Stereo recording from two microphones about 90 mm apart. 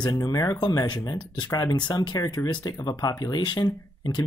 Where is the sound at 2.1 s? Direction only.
40° left (ahead or behind).